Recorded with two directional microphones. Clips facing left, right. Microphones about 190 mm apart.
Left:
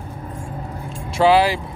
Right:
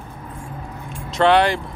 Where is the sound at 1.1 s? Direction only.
5° left (ahead or behind).